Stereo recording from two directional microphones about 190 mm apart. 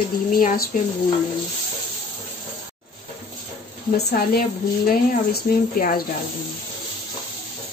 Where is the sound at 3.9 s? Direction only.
55° left (ahead or behind).